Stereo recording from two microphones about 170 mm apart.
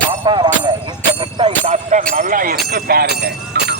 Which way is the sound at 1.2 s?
30° right (ahead or behind).